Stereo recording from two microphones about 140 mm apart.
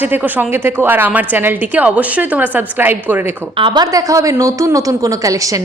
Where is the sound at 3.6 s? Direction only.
35° right (ahead or behind).